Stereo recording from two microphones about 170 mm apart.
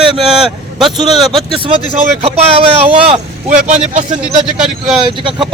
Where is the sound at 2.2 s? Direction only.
35° right (ahead or behind).